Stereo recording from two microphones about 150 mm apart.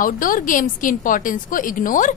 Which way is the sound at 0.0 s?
65° left (ahead or behind).